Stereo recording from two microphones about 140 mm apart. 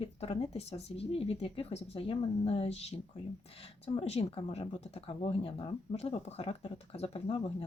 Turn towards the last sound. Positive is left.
turn(degrees=45)  # may be behind; listen again after turning